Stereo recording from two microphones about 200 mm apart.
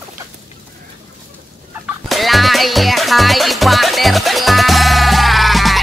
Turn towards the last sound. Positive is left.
turn(degrees=0)  # may be behind; listen again after turning